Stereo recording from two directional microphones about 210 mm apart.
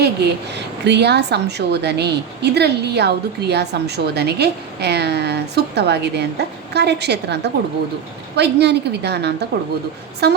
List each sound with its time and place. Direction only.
0.0 s a woman's voice: 50° right (ahead or behind)